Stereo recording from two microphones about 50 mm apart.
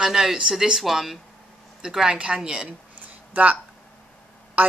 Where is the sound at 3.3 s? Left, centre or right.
Right.